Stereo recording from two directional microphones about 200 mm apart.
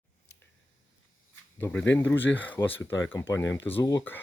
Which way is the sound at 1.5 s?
10° left (ahead or behind).